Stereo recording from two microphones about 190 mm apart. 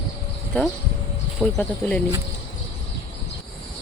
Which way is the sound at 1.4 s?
5° left (ahead or behind).